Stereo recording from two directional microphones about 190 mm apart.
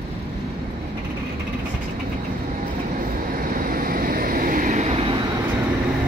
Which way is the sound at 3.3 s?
45° right (ahead or behind).